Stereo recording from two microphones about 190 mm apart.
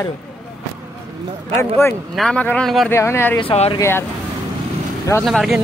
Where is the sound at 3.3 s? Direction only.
30° left (ahead or behind).